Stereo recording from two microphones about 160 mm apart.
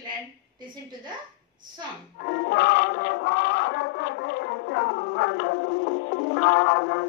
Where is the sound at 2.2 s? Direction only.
75° left (ahead or behind).